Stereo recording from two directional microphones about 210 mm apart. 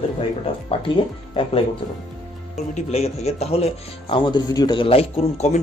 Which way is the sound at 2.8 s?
30° left (ahead or behind).